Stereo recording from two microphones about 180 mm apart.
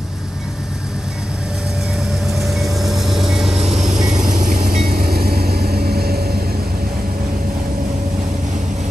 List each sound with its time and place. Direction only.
2.3 s vehicle: centre (ahead or behind)
4.3 s vehicle: 45° right (ahead or behind)